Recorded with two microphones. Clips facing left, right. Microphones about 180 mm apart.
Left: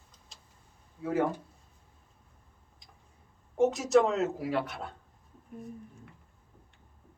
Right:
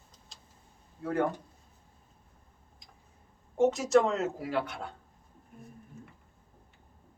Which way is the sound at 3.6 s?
Centre (ahead or behind).